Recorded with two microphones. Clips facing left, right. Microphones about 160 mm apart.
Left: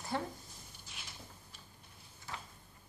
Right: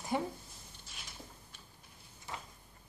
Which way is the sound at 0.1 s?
15° right (ahead or behind).